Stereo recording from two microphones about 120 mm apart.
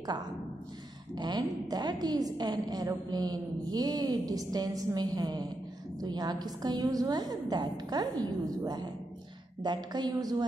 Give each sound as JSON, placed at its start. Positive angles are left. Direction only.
{"t": 1.1, "sound": "a woman's voice", "side_deg": -35}